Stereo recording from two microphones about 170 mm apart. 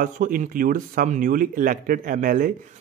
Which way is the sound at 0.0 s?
55° right (ahead or behind).